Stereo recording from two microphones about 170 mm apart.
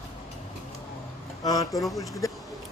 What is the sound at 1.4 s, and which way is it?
Speech, 20° left (ahead or behind).